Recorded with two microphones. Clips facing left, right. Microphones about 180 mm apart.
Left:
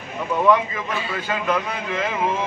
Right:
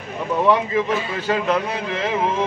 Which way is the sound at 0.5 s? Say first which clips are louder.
Right 1 dB; 30° right (ahead or behind).